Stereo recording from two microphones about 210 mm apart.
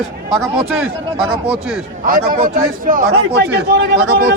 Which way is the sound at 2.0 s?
40° right (ahead or behind).